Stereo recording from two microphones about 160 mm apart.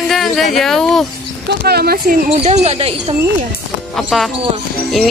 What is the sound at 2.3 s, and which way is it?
Speech, 40° right (ahead or behind).